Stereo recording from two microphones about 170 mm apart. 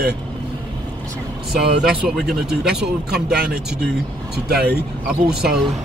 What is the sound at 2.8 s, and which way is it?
Speech, 70° right (ahead or behind).